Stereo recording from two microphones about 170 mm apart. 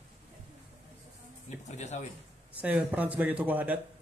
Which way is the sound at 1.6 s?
45° left (ahead or behind).